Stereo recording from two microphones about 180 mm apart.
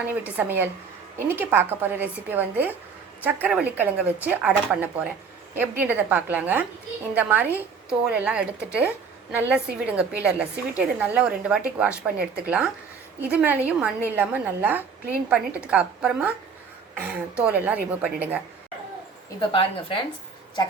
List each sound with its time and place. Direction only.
0.3 s a woman's voice: 10° right (ahead or behind)
19.4 s speech: 30° left (ahead or behind)